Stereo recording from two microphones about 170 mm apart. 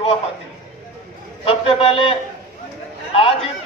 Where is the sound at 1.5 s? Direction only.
35° left (ahead or behind).